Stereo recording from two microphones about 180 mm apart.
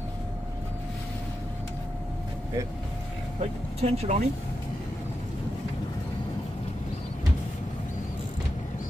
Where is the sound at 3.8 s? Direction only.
35° right (ahead or behind).